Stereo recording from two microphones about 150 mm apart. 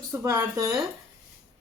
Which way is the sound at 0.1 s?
15° right (ahead or behind).